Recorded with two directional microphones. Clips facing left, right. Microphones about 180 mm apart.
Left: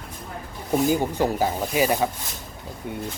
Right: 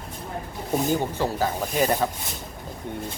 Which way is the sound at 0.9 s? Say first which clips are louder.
Left 2 dB; 15° left (ahead or behind).